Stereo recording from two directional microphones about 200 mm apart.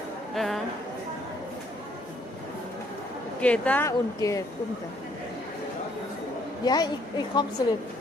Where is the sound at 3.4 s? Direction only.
5° left (ahead or behind).